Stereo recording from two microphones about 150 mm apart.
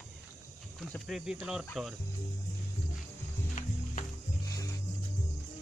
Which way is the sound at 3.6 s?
55° left (ahead or behind).